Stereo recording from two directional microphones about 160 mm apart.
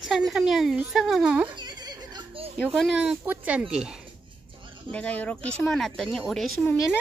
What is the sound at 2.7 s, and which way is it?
Speech, 5° right (ahead or behind).